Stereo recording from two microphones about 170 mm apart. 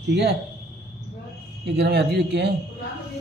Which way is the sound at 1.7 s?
80° right.